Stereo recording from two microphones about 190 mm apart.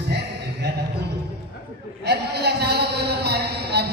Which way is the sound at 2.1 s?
60° right (ahead or behind).